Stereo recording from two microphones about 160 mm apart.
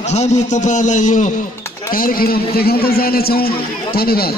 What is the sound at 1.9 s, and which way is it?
A man's voice, 65° left (ahead or behind).